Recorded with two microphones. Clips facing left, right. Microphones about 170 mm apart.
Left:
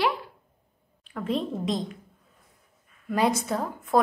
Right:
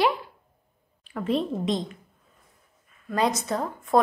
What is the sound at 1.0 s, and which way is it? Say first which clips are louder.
Speech: right 2 dB; 5° right (ahead or behind).